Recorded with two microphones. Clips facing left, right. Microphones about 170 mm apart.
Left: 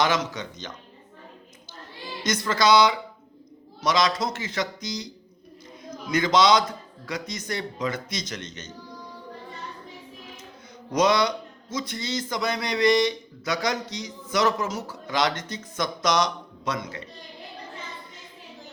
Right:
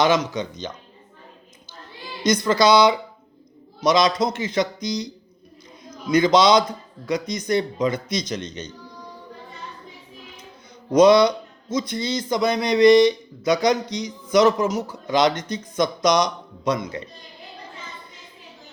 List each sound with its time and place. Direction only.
0.0 s speech: 20° right (ahead or behind)
2.2 s speech: 20° right (ahead or behind)
6.1 s a man's voice: 20° right (ahead or behind)
11.0 s speech: 20° right (ahead or behind)